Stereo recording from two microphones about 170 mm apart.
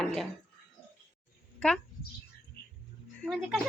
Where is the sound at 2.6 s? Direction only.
70° left (ahead or behind).